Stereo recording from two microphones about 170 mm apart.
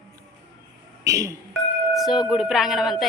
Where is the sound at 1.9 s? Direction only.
Centre (ahead or behind).